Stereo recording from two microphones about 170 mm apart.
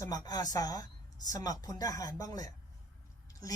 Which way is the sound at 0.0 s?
20° left (ahead or behind).